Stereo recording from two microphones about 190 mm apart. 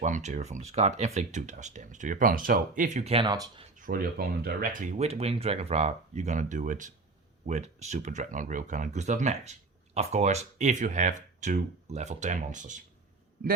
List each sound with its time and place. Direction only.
0.0 s speech: 40° right (ahead or behind); by 3.6 s 20° right (ahead or behind)
3.8 s speech: 50° right (ahead or behind)